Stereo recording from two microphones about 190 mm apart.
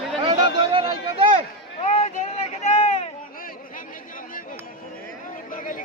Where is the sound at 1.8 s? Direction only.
35° left (ahead or behind).